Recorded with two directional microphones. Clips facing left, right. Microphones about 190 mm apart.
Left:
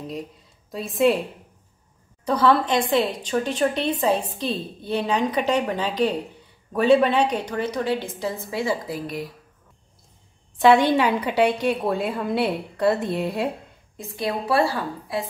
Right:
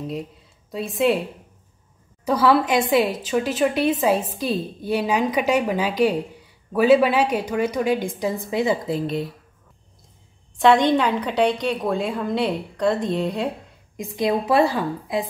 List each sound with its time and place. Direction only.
0.7 s a woman's voice: centre (ahead or behind)
2.2 s a woman's voice: 10° right (ahead or behind); by 9.3 s 25° right (ahead or behind)
10.6 s a woman's voice: 5° left (ahead or behind)
13.9 s a woman's voice: 20° right (ahead or behind)